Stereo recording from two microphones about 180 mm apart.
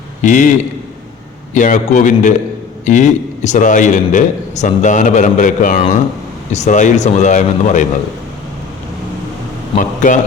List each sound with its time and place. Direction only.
0.2 s a man's voice: 45° left (ahead or behind)
1.5 s a man's voice: 45° left (ahead or behind)
9.7 s a man's voice: 45° left (ahead or behind)